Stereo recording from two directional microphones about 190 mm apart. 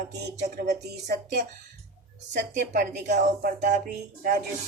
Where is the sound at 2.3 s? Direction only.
40° right (ahead or behind).